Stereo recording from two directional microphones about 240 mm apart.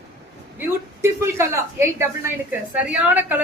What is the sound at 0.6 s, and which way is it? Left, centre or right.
A woman's voice, centre.